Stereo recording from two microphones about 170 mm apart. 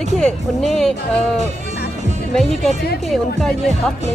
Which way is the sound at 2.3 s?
5° left (ahead or behind).